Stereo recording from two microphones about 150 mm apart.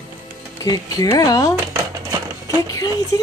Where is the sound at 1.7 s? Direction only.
20° right (ahead or behind).